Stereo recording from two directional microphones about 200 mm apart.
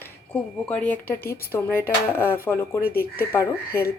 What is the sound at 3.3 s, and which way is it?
Speech, 10° left (ahead or behind).